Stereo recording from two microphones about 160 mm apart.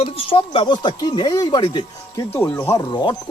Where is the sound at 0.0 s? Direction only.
35° left (ahead or behind).